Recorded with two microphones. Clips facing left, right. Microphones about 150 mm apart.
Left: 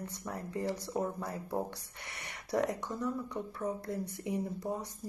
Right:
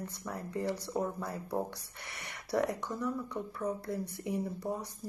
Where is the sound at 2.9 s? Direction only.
20° left (ahead or behind).